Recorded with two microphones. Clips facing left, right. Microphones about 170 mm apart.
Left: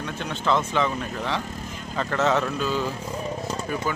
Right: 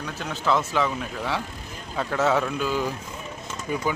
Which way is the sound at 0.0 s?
5° right (ahead or behind).